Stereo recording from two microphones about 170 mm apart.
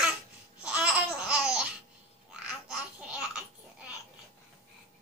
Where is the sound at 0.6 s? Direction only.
5° right (ahead or behind).